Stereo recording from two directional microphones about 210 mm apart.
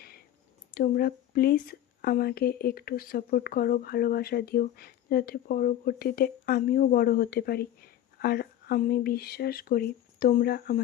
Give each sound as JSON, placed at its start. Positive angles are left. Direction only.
{"t": 0.7, "sound": "speech", "side_deg": 45}